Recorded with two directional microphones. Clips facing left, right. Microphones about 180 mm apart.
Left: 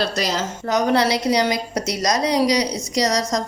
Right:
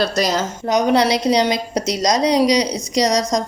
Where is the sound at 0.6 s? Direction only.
15° right (ahead or behind).